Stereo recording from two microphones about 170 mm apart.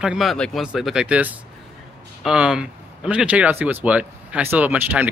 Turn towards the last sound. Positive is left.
turn(degrees=-10)  # may be behind; listen again after turning